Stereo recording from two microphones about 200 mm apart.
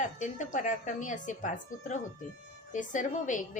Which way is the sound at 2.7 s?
40° left (ahead or behind).